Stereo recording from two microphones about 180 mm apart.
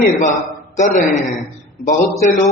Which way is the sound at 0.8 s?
40° left (ahead or behind).